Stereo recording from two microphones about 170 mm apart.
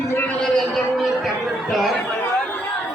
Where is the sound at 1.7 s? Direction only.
Centre (ahead or behind).